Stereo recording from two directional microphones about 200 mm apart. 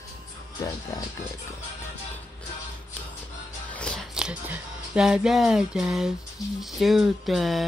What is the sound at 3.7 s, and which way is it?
Music, 5° left (ahead or behind).